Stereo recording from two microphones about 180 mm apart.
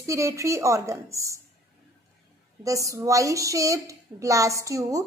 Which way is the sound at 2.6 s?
20° right (ahead or behind).